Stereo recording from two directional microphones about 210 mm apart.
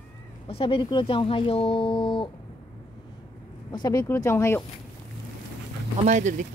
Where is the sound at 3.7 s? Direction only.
20° left (ahead or behind).